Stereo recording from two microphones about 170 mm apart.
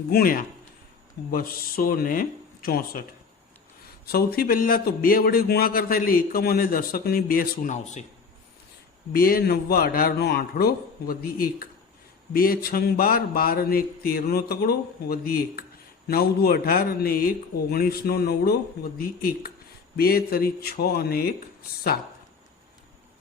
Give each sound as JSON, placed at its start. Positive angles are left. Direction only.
{"t": 0.1, "sound": "a man's voice", "side_deg": 60}
{"t": 4.0, "sound": "a man's voice", "side_deg": 60}
{"t": 9.1, "sound": "a man's voice", "side_deg": 60}